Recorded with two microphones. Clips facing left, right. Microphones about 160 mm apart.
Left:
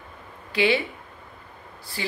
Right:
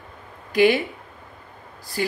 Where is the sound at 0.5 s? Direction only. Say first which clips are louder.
Right 5 dB; 40° right (ahead or behind).